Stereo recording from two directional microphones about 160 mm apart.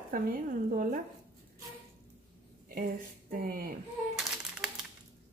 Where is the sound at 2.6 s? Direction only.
65° right (ahead or behind).